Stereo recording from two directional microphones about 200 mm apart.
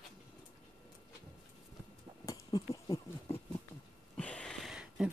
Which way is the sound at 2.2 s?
15° left (ahead or behind).